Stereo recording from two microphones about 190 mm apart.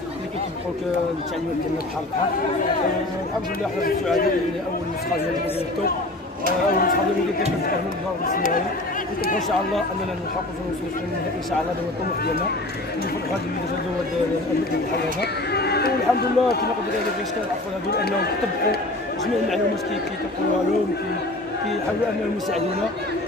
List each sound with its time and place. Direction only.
6.7 s a man's voice: 50° left (ahead or behind)
8.3 s a man's voice: 45° left (ahead or behind)
15.0 s speech: 60° left (ahead or behind)
18.0 s speech: 55° left (ahead or behind)